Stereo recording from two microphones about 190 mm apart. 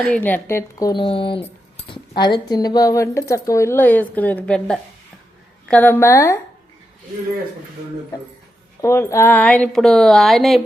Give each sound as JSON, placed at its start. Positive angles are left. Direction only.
{"t": 0.0, "sound": "speech", "side_deg": 5}
{"t": 8.8, "sound": "speech", "side_deg": 15}